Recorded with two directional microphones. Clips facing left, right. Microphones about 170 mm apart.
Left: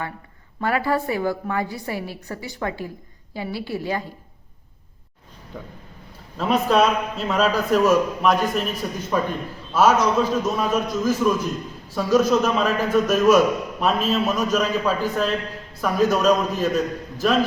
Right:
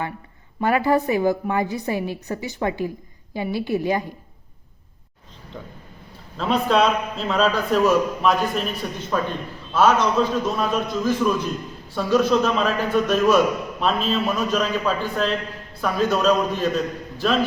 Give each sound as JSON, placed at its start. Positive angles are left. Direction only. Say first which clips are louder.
{"t": 0.6, "sound": "a woman's voice", "louder": "right 3 dB", "side_deg": -20}
{"t": 6.3, "sound": "a man's voice", "louder": "left 1 dB", "side_deg": 5}